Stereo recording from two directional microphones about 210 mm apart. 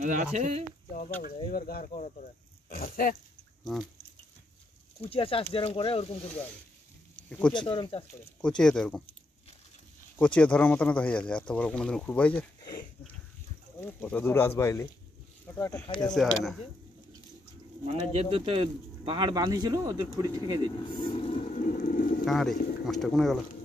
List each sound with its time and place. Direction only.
0.0 s speech: 35° right (ahead or behind)
1.2 s speech: 45° left (ahead or behind)
5.0 s speech: 25° left (ahead or behind)
7.2 s speech: 5° left (ahead or behind)
7.5 s speech: 20° left (ahead or behind)
8.4 s speech: 5° left (ahead or behind)
10.1 s speech: 5° left (ahead or behind)
13.7 s speech: 10° left (ahead or behind)
16.2 s speech: centre (ahead or behind)
17.8 s speech: 30° right (ahead or behind)
21.0 s a sound: 25° left (ahead or behind)
22.2 s speech: centre (ahead or behind)